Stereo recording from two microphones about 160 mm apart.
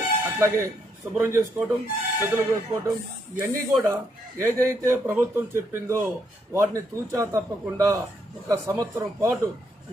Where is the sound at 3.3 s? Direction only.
15° right (ahead or behind).